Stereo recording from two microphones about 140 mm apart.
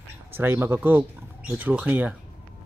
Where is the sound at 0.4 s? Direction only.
15° right (ahead or behind).